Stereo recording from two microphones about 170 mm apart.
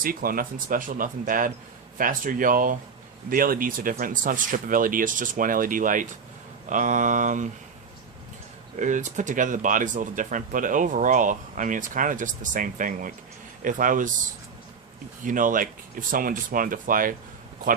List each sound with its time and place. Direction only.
0.0 s speech: 60° right (ahead or behind)
8.7 s speech: 45° right (ahead or behind)
15.2 s speech: 50° right (ahead or behind)